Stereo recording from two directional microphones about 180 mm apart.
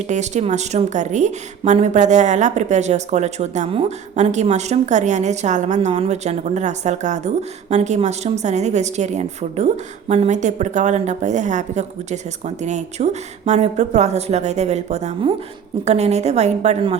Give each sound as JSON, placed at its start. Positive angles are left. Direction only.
{"t": 0.1, "sound": "speech", "side_deg": -40}